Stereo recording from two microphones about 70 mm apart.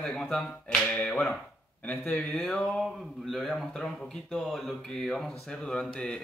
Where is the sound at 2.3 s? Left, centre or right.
Centre.